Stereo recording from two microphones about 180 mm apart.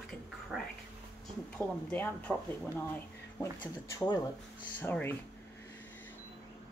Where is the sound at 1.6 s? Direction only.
10° left (ahead or behind).